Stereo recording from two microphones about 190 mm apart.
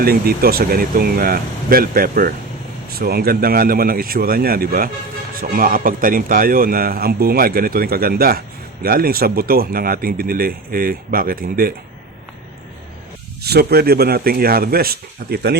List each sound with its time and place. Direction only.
0.0 s speech: 50° right (ahead or behind)
13.4 s a man's voice: 55° right (ahead or behind)